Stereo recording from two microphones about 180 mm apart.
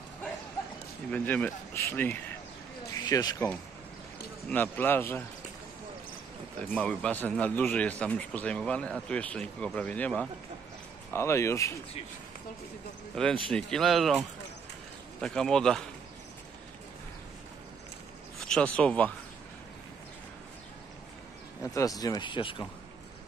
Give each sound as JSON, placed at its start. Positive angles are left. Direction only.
{"t": 1.1, "sound": "a man's voice", "side_deg": 10}
{"t": 2.9, "sound": "a sound", "side_deg": 20}
{"t": 4.5, "sound": "a man's voice", "side_deg": 10}
{"t": 6.7, "sound": "a man's voice", "side_deg": 5}
{"t": 13.1, "sound": "speech", "side_deg": 5}
{"t": 18.5, "sound": "a man's voice", "side_deg": 5}
{"t": 21.6, "sound": "speech", "side_deg": 20}